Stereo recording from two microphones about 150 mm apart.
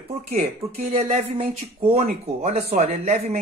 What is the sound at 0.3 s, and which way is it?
Speech, 45° right (ahead or behind).